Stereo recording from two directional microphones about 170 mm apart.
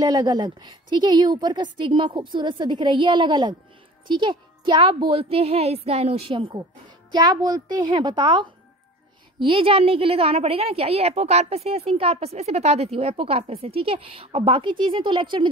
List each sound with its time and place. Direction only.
0.0 s a woman's voice: 25° right (ahead or behind)